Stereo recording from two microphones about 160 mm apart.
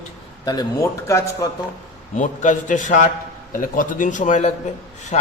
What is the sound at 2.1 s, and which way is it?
A man's voice, 50° left (ahead or behind).